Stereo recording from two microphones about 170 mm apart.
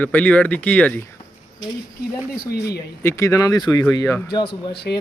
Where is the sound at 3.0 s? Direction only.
15° left (ahead or behind).